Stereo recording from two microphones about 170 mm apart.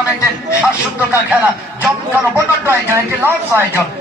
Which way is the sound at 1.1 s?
10° right (ahead or behind).